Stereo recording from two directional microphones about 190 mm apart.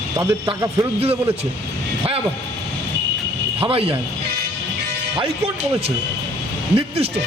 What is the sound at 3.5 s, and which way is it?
Speech, 30° right (ahead or behind).